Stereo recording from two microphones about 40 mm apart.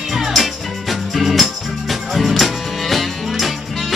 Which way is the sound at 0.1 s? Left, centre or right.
Centre.